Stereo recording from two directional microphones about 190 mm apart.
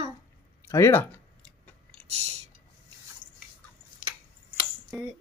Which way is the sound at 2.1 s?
35° right (ahead or behind).